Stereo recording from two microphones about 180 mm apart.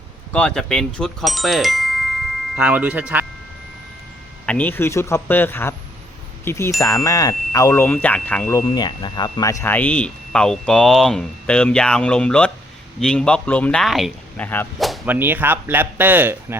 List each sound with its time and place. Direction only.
0.3 s speech: 5° left (ahead or behind)
4.4 s speech: 10° left (ahead or behind)
8.6 s speech: 25° left (ahead or behind); by 16.6 s 10° right (ahead or behind)